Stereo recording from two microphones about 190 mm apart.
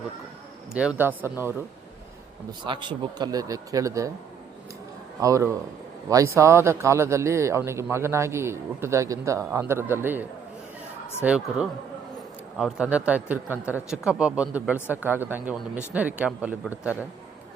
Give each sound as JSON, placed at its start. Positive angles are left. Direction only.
{"t": 0.7, "sound": "a man's voice", "side_deg": -5}
{"t": 2.5, "sound": "a man's voice", "side_deg": -25}
{"t": 5.2, "sound": "a man's voice", "side_deg": -15}